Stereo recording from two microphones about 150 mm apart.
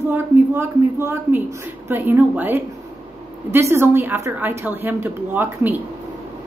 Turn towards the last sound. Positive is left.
turn(degrees=-10)  # may be behind; listen again after turning